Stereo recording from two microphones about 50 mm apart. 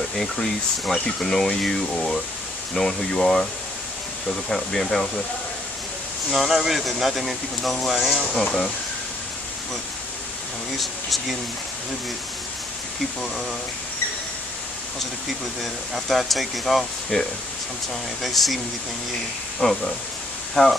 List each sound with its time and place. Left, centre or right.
0.2 s speech: centre
4.5 s speech: centre
6.3 s speech: centre
10.8 s speech: centre
15.6 s speech: centre
17.1 s speech: centre
18.2 s speech: centre
19.6 s speech: left
20.6 s speech: centre